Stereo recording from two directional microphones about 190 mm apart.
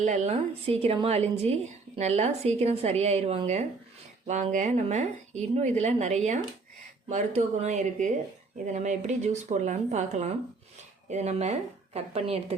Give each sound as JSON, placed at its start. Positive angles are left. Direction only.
{"t": 0.0, "sound": "speech", "side_deg": -35}